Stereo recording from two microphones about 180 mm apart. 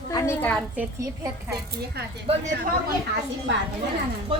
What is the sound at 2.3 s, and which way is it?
Speech, 30° right (ahead or behind).